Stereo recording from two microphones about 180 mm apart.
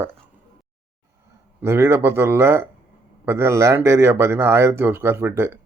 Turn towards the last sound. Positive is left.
turn(degrees=-15)  # may be behind; listen again after turning